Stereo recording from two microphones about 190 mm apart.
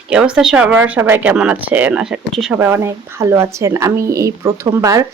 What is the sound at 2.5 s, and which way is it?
A woman's voice, 15° right (ahead or behind).